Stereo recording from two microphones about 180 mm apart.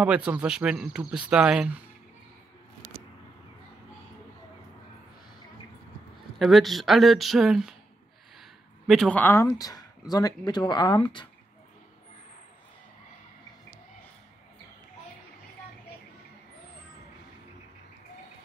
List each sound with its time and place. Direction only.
0.0 s speech: 5° right (ahead or behind)
6.3 s speech: centre (ahead or behind)
8.8 s speech: 5° left (ahead or behind); by 11.2 s 25° left (ahead or behind)